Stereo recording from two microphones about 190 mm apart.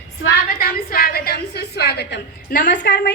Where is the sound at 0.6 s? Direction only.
50° left (ahead or behind).